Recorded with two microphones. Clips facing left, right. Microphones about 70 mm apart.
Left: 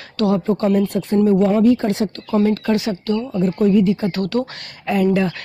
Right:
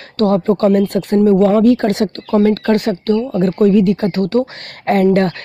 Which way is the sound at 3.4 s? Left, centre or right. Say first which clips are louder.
Right 3 dB; right.